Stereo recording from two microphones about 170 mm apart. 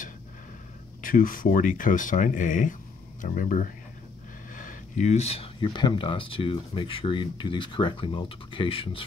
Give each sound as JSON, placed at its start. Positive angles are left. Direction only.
{"t": 1.0, "sound": "speech", "side_deg": 55}